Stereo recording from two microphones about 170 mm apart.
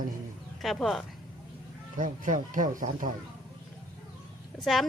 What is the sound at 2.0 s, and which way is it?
Speech, 50° right (ahead or behind).